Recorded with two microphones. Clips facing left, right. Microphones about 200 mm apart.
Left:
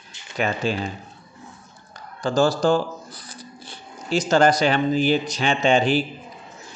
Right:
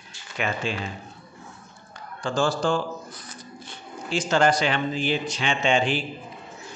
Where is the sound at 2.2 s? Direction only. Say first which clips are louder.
Left 5 dB; 40° left (ahead or behind).